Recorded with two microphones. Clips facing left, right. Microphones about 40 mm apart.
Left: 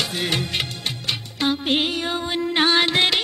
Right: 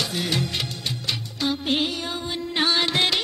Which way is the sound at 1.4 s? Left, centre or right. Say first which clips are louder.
Left 3 dB; left.